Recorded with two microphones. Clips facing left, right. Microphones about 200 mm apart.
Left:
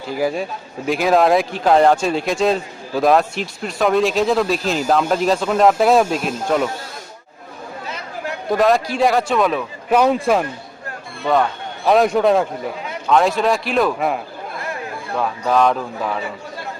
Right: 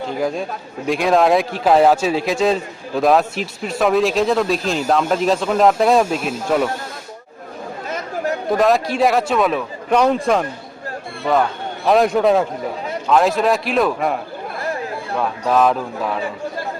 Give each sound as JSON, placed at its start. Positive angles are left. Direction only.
{"t": 0.2, "sound": "a man's voice", "side_deg": 5}
{"t": 7.9, "sound": "chatter", "side_deg": -45}
{"t": 8.4, "sound": "a man's voice", "side_deg": 0}
{"t": 11.9, "sound": "a man's voice", "side_deg": 0}